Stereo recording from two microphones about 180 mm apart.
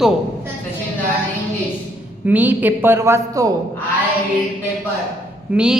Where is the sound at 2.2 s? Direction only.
10° right (ahead or behind).